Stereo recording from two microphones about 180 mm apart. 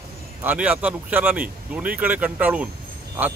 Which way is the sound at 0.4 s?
10° right (ahead or behind).